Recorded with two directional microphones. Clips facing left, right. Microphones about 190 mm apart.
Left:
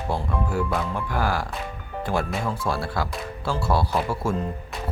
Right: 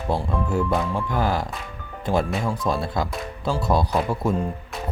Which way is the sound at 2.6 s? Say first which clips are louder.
Right 2 dB; 20° right (ahead or behind).